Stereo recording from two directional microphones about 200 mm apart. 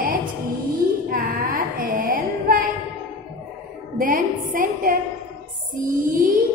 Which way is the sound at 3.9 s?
40° right (ahead or behind).